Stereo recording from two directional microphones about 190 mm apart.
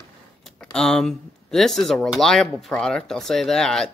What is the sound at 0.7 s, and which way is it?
Speech, 5° left (ahead or behind).